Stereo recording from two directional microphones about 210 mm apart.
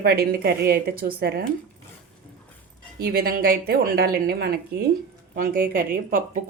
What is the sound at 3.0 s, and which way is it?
Speech, 45° right (ahead or behind).